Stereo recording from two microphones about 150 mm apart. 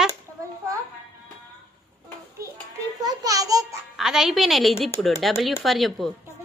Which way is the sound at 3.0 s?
25° right (ahead or behind).